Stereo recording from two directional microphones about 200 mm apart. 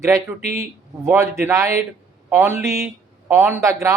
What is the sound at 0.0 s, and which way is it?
Speech, 15° right (ahead or behind).